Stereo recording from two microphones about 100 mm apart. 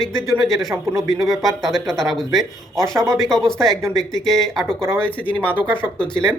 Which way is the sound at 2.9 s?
30° right (ahead or behind).